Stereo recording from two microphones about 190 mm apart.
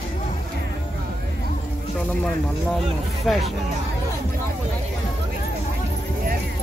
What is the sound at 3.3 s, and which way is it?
Speech, centre (ahead or behind).